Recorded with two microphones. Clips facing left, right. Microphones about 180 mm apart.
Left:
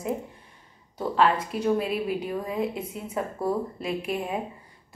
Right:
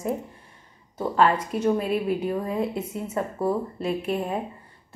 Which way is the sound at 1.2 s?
10° left (ahead or behind).